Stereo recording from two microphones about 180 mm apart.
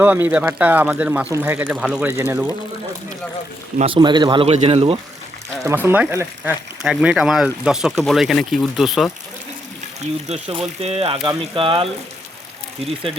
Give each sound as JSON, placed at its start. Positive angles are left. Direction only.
{"t": 0.0, "sound": "speech", "side_deg": -10}
{"t": 3.8, "sound": "a man's voice", "side_deg": -30}
{"t": 5.6, "sound": "speech", "side_deg": -10}
{"t": 10.2, "sound": "a man's voice", "side_deg": -35}